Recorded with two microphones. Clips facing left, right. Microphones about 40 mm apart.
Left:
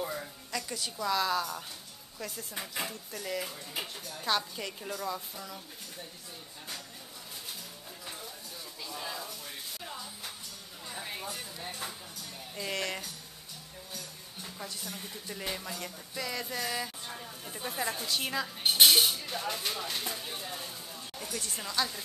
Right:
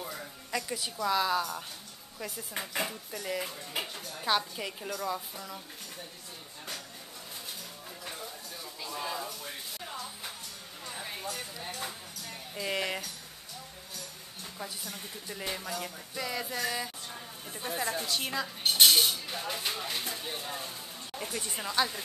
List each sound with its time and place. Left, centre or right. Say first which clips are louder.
0.0 s a sound: left 4 dB; centre
0.5 s a woman's voice: right 3 dB; centre
8.8 s a sound: right 4 dB; centre
10.9 s a sound: even; centre
11.5 s speech: right 1 dB; centre
12.5 s a woman's voice: right 2 dB; centre
14.4 s a woman's voice: right 1 dB; centre
19.1 s a woman's voice: left 1 dB; centre
21.2 s speech: right 2 dB; right